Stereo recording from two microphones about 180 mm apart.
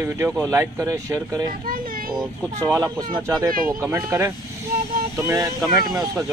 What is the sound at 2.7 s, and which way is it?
Speech, 20° right (ahead or behind).